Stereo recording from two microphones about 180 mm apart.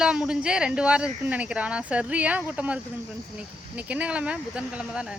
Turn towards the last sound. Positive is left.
turn(degrees=-5)  # may be behind; listen again after turning